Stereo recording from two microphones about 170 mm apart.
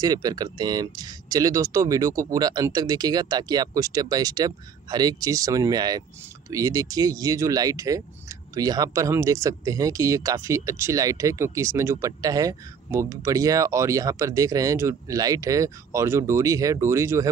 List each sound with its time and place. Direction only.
0.0 s speech: 20° right (ahead or behind)